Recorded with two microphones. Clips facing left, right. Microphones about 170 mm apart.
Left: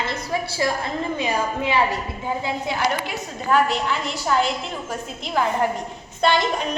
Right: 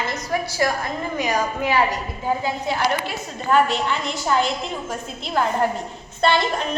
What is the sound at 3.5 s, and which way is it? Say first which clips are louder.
A woman's voice: right 1 dB; 5° left (ahead or behind).